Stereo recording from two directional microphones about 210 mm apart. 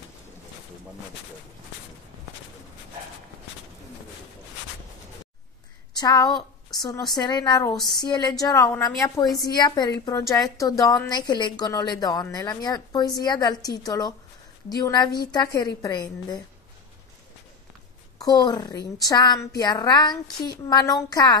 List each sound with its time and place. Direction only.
5.9 s a woman's voice: 20° left (ahead or behind)
18.2 s a woman's voice: 20° left (ahead or behind)